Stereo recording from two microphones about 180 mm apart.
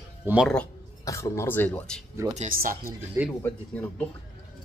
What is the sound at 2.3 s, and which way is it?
Speech, 45° right (ahead or behind).